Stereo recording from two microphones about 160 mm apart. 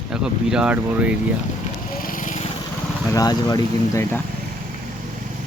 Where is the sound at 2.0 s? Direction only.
60° left (ahead or behind).